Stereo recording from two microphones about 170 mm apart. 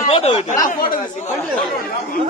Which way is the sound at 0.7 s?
55° left (ahead or behind).